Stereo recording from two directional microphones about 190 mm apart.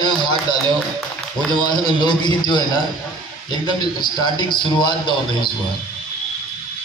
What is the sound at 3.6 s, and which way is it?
A man's voice, 20° left (ahead or behind).